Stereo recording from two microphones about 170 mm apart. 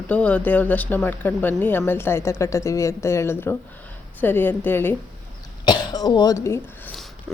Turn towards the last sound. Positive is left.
turn(degrees=15)  # may be behind; listen again after turning